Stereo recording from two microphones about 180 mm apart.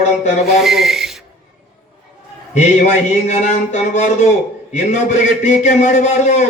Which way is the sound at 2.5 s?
40° left (ahead or behind).